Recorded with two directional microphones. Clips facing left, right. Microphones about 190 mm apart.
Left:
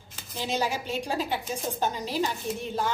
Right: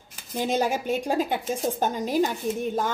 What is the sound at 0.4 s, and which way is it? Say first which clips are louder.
A woman's voice: right 5 dB; 50° right (ahead or behind).